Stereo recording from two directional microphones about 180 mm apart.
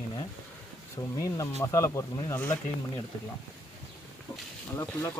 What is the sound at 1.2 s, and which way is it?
Speech, 15° left (ahead or behind).